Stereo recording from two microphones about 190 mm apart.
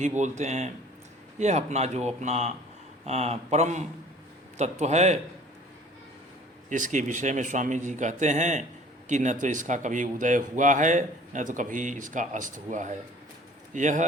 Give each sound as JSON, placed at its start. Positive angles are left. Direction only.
{"t": 0.2, "sound": "speech", "side_deg": -40}
{"t": 6.7, "sound": "speech", "side_deg": -40}